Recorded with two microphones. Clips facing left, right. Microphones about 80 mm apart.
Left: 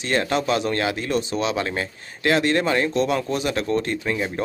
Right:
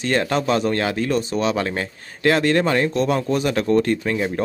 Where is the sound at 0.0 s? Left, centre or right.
Right.